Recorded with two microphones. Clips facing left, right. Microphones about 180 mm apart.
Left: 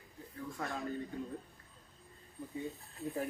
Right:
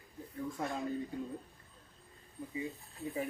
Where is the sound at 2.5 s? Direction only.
Centre (ahead or behind).